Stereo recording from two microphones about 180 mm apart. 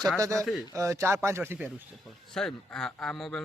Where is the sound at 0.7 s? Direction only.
15° right (ahead or behind).